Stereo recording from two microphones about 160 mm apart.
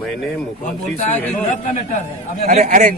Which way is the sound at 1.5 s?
50° left (ahead or behind).